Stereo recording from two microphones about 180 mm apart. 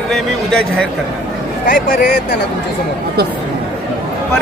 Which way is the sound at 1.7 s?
55° left (ahead or behind).